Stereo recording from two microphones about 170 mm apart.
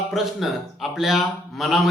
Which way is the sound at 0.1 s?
Centre (ahead or behind).